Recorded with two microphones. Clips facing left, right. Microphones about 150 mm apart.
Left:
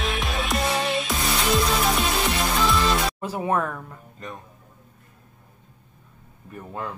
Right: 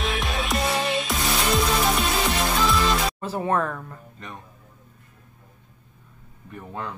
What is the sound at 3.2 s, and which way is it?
Speech, 10° left (ahead or behind).